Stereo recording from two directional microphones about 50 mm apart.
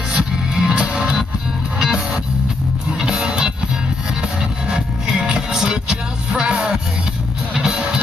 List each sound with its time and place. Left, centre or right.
0.1 s music: centre
3.0 s music: centre
4.6 s music: centre